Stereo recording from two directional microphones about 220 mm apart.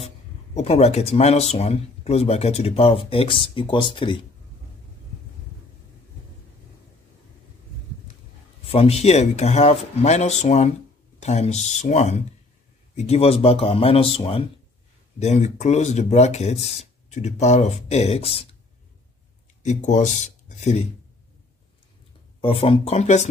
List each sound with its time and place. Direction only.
0.6 s speech: 30° left (ahead or behind)
8.6 s speech: 25° left (ahead or behind)
19.6 s speech: 35° left (ahead or behind)
22.4 s speech: 25° left (ahead or behind)